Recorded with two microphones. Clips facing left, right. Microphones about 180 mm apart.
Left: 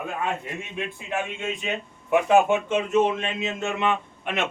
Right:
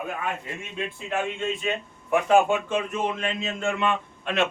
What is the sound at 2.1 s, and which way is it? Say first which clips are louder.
A man's voice: left 1 dB; 20° left (ahead or behind).